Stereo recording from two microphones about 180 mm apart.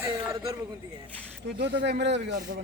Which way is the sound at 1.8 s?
75° right (ahead or behind).